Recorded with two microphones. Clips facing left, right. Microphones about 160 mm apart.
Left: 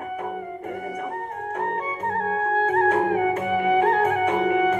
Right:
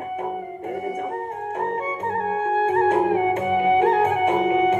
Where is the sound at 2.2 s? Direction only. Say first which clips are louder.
Right 2 dB; 25° right (ahead or behind).